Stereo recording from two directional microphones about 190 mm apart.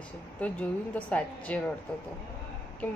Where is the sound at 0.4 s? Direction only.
5° left (ahead or behind).